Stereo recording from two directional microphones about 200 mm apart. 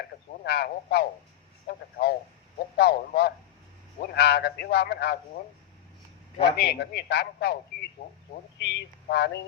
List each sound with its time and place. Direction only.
0.1 s a sound: 55° left (ahead or behind)
0.4 s a man's voice: 55° left (ahead or behind)
6.6 s a man's voice: 55° left (ahead or behind)